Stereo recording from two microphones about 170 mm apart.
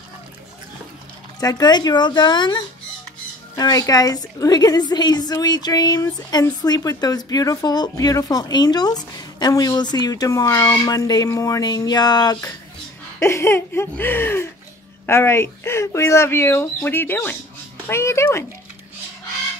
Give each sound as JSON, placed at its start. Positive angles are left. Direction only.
{"t": 1.4, "sound": "speech", "side_deg": 25}